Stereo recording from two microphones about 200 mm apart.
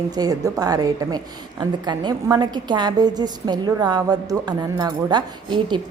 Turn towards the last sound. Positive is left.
turn(degrees=-20)  # may be behind; listen again after turning